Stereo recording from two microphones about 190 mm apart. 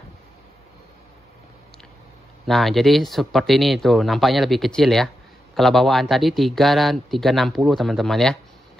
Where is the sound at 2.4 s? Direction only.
Centre (ahead or behind).